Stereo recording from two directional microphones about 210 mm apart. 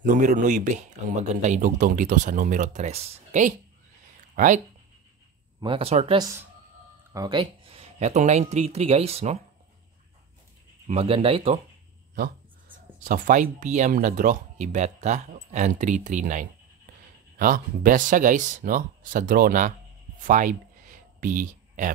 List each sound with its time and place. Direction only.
0.0 s speech: 40° right (ahead or behind)
5.6 s speech: 25° right (ahead or behind)
10.9 s speech: 25° right (ahead or behind)
12.2 s speech: 40° right (ahead or behind)
20.2 s a sound: 40° right (ahead or behind)